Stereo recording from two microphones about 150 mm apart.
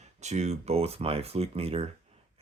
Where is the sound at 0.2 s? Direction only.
50° right (ahead or behind).